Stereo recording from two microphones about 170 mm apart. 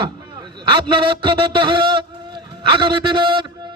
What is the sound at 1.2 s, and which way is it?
A man's voice, 30° right (ahead or behind).